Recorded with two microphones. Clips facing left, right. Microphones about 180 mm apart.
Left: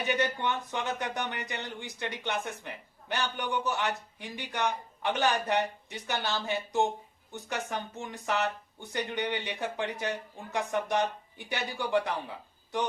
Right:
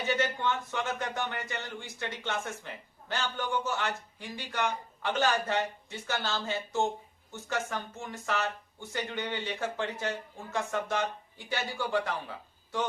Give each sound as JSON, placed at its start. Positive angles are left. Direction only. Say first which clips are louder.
{"t": 0.0, "sound": "speech", "louder": "even", "side_deg": 15}